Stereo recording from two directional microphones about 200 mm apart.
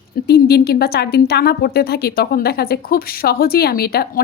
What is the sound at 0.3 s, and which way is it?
Speech, 50° left (ahead or behind).